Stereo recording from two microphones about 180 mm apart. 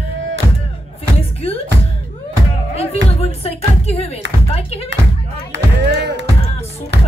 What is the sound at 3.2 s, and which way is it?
Music, 35° left (ahead or behind).